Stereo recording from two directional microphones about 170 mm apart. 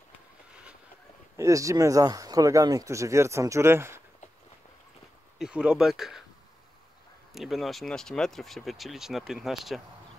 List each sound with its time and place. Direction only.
1.3 s speech: 20° right (ahead or behind)
5.4 s speech: 5° right (ahead or behind)
7.3 s speech: centre (ahead or behind)